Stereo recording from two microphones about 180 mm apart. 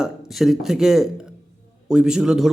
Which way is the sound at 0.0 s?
Centre (ahead or behind).